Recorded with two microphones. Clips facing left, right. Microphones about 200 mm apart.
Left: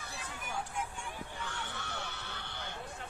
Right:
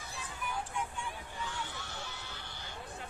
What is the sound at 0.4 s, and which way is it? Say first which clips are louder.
Vehicle: right 3 dB; 45° left (ahead or behind).